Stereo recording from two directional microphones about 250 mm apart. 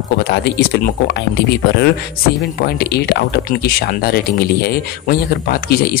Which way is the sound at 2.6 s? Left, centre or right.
Left.